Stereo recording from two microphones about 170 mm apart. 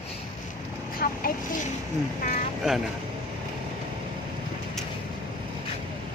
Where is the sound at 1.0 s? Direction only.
55° left (ahead or behind).